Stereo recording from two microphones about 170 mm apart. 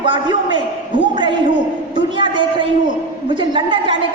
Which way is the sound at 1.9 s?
25° right (ahead or behind).